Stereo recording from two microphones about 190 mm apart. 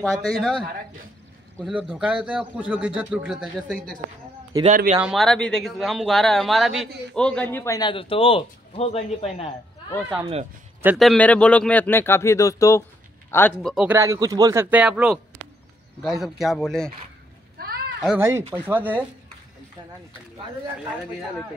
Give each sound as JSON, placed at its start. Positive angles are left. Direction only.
{"t": 0.0, "sound": "speech", "side_deg": 0}
{"t": 1.9, "sound": "speech", "side_deg": -5}
{"t": 4.6, "sound": "speech", "side_deg": -40}
{"t": 5.0, "sound": "speech", "side_deg": 0}
{"t": 11.0, "sound": "a man's voice", "side_deg": 5}
{"t": 13.6, "sound": "speech", "side_deg": 0}
{"t": 13.9, "sound": "speech", "side_deg": -15}
{"t": 17.6, "sound": "a sound", "side_deg": -55}
{"t": 18.0, "sound": "speech", "side_deg": -10}